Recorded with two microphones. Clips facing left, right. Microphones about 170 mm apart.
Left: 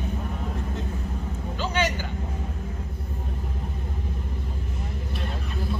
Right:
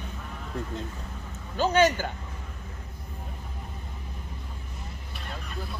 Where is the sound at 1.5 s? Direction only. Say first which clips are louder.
Right 5 dB; 45° right (ahead or behind).